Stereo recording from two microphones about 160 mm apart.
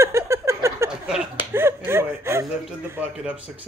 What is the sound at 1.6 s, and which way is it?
Speech, 15° right (ahead or behind).